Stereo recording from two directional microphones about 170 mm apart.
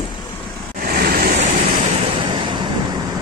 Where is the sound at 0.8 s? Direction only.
60° right (ahead or behind).